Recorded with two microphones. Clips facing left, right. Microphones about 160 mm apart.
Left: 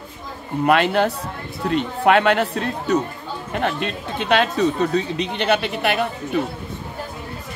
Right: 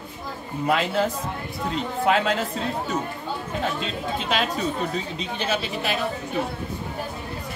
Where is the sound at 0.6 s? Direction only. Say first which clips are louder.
Left 5 dB; 70° left (ahead or behind).